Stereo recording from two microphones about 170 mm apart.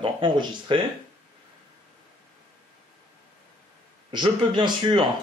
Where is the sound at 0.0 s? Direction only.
30° right (ahead or behind).